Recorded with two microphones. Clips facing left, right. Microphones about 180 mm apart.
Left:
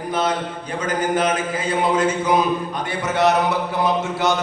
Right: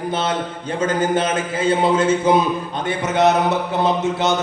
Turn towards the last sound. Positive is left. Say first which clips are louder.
# right 2 dB
turn(degrees=-20)  # may be behind; listen again after turning